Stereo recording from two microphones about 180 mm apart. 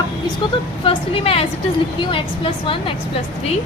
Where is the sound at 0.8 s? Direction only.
30° left (ahead or behind).